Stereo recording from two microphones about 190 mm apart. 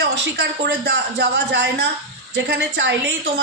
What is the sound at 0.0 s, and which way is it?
A woman's voice, 65° right (ahead or behind).